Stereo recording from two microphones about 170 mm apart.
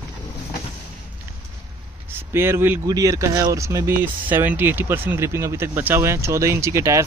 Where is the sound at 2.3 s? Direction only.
15° right (ahead or behind).